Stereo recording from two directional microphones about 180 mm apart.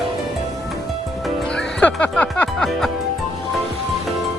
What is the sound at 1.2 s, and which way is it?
Music, 5° left (ahead or behind).